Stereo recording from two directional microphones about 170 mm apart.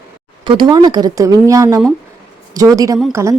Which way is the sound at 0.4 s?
25° right (ahead or behind).